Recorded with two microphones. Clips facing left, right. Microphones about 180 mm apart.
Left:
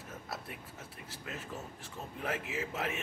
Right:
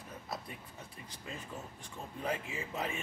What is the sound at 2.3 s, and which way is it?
Speech, 80° left.